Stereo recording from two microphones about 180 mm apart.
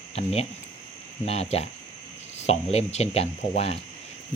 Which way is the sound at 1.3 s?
35° left (ahead or behind).